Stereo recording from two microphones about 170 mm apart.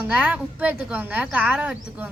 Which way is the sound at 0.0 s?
10° right (ahead or behind).